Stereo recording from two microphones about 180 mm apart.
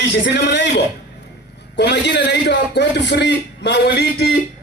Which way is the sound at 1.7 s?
70° left (ahead or behind).